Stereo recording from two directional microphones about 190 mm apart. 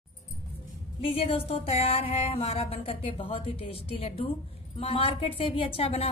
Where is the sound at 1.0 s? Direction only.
30° left (ahead or behind).